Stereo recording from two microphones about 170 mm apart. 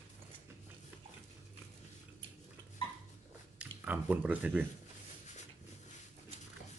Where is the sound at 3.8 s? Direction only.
10° right (ahead or behind).